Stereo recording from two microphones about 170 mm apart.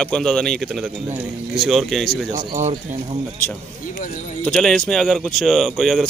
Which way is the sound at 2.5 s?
45° right (ahead or behind).